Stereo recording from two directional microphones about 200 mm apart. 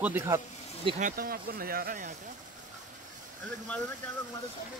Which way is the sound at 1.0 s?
45° right (ahead or behind).